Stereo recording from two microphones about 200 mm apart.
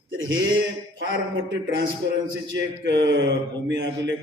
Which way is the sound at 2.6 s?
60° right (ahead or behind).